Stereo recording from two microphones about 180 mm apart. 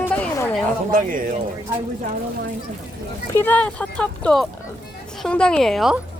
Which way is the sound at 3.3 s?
10° left (ahead or behind).